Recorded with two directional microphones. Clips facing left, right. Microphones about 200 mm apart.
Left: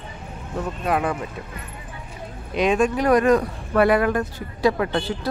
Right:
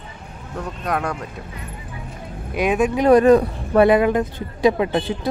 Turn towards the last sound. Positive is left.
turn(degrees=-15)  # may be behind; listen again after turning